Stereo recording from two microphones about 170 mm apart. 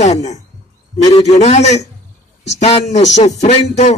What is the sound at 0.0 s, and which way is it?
Speech, 40° left (ahead or behind).